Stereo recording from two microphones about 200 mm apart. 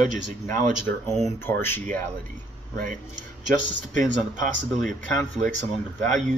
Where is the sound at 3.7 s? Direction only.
40° right (ahead or behind).